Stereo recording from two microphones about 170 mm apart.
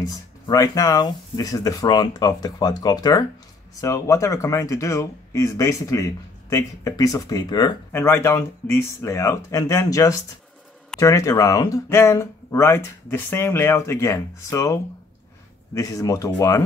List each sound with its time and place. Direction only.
0.0 s speech: 20° left (ahead or behind)